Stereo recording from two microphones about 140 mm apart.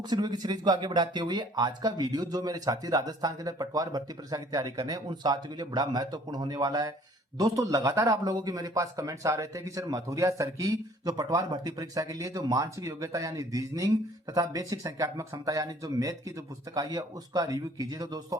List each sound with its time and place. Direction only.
0.1 s speech: 30° right (ahead or behind)